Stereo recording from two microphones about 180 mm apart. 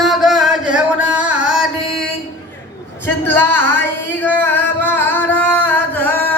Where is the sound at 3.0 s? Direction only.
10° left (ahead or behind).